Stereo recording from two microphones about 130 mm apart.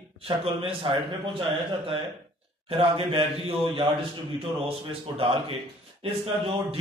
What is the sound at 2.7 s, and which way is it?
A man's voice, 45° right (ahead or behind).